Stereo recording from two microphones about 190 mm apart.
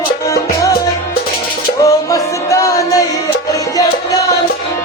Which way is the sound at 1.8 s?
15° left (ahead or behind).